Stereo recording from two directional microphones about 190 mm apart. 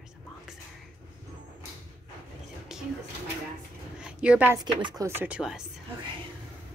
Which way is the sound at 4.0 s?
5° right (ahead or behind).